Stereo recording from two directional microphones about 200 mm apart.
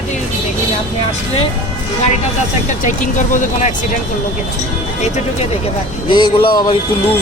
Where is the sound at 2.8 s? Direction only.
40° left (ahead or behind).